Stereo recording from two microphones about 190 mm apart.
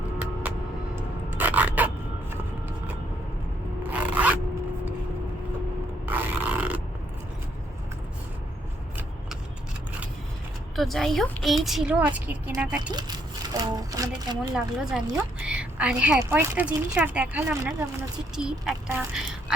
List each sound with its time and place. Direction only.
1.3 s scrape: 10° right (ahead or behind)
3.8 s zipper: 10° right (ahead or behind)
6.1 s a sound: 10° right (ahead or behind)
10.8 s a woman's voice: centre (ahead or behind)
12.9 s speech: 20° right (ahead or behind)
14.5 s a woman's voice: 5° right (ahead or behind)